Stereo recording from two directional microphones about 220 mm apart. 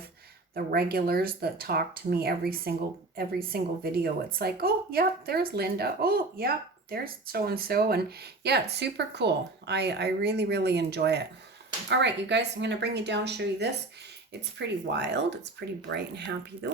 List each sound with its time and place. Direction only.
0.5 s a woman's voice: 45° right (ahead or behind)